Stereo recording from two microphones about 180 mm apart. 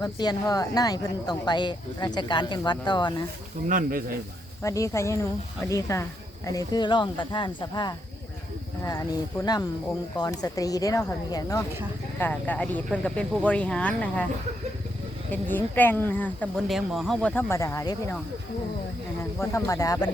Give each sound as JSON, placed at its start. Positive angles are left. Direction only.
{"t": 0.0, "sound": "speech", "side_deg": 20}
{"t": 3.7, "sound": "speech", "side_deg": -50}
{"t": 4.6, "sound": "speech", "side_deg": 15}
{"t": 12.2, "sound": "speech", "side_deg": 10}
{"t": 15.3, "sound": "speech", "side_deg": 10}
{"t": 19.4, "sound": "speech", "side_deg": 15}